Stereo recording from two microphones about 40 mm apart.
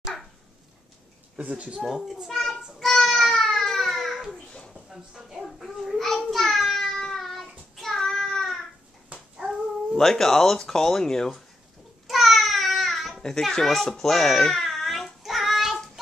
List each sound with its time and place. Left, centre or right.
1.5 s speech: right
1.9 s a child's voice: centre
2.8 s a sound: centre
4.5 s a sound: left
4.8 s speech: centre
5.9 s child singing: centre
9.4 s dog: centre
9.9 s speech: centre
12.1 s babbling: centre
13.4 s a child's voice: centre
13.9 s child singing: centre